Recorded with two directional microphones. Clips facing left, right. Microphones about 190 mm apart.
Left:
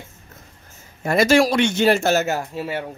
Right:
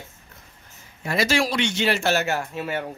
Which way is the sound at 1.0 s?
50° left (ahead or behind).